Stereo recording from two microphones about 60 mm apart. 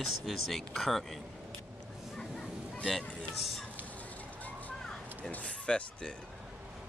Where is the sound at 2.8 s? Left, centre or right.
Centre.